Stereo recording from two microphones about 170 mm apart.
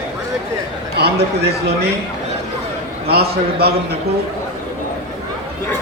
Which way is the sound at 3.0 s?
70° right (ahead or behind).